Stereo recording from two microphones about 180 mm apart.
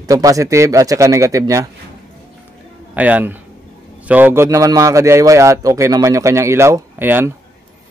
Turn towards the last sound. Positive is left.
turn(degrees=-15)  # may be behind; listen again after turning